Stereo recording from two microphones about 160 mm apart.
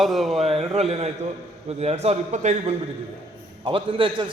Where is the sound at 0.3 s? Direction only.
40° right (ahead or behind).